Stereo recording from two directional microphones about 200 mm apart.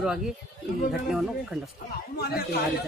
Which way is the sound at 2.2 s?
50° left (ahead or behind).